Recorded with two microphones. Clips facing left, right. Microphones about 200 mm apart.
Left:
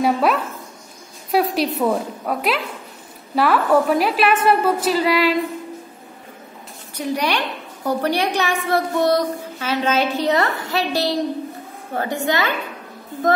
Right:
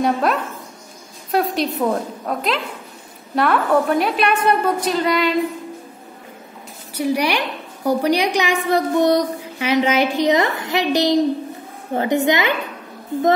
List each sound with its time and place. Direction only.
0.0 s a woman's voice: 5° left (ahead or behind)
7.0 s a woman's voice: 10° right (ahead or behind)